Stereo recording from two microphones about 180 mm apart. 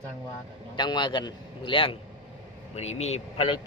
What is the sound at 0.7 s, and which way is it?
A man's voice, 25° left (ahead or behind).